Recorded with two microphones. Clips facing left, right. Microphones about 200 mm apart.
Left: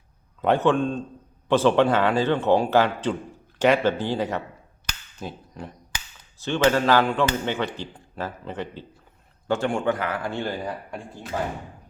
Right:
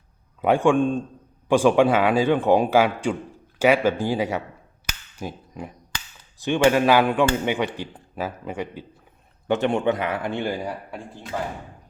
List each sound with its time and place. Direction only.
0.4 s a man's voice: 10° right (ahead or behind)
4.9 s cap gun: 10° right (ahead or behind)
6.4 s a man's voice: 15° right (ahead or behind)